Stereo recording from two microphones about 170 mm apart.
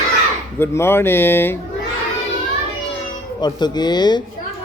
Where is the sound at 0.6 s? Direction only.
15° left (ahead or behind).